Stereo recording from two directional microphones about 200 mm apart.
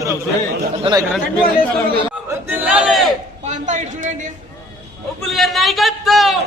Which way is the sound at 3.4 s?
35° right (ahead or behind).